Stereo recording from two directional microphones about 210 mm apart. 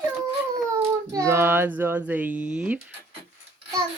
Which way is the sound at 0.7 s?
15° right (ahead or behind).